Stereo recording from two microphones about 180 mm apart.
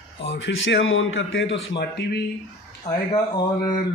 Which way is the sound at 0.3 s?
90° left.